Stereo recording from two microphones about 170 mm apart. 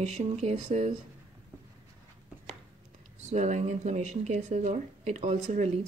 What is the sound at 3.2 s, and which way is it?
Speech, 45° right (ahead or behind).